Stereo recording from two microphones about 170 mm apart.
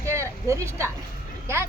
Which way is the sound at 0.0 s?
15° right (ahead or behind).